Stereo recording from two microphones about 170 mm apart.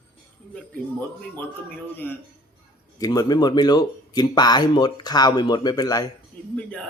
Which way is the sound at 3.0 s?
25° left (ahead or behind).